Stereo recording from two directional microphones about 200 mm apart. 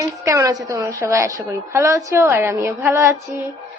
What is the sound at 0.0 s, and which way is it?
A woman's voice, 15° right (ahead or behind).